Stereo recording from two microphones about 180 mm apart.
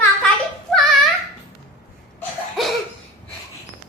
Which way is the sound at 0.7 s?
Centre (ahead or behind).